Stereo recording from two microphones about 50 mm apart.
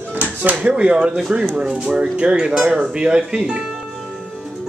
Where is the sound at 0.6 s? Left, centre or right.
Right.